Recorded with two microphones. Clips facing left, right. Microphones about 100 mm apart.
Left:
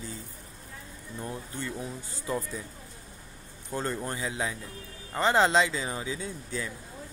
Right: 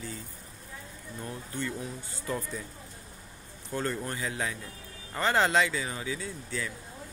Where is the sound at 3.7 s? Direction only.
20° left (ahead or behind).